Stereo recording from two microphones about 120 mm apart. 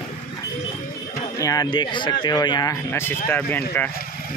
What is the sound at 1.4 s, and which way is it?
Speech, 30° left (ahead or behind).